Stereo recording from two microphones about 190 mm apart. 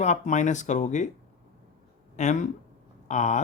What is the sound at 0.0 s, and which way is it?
Speech, 40° left (ahead or behind).